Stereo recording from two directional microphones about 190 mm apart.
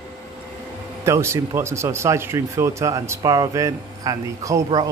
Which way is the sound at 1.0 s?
15° right (ahead or behind).